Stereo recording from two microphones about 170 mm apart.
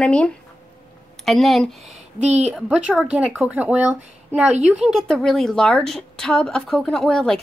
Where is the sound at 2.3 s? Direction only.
40° right (ahead or behind).